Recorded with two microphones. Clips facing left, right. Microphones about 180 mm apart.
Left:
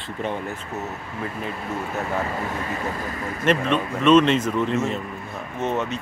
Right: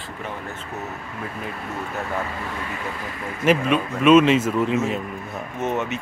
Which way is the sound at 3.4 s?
5° right (ahead or behind).